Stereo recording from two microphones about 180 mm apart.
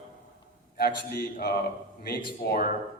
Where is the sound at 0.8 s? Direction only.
60° left (ahead or behind).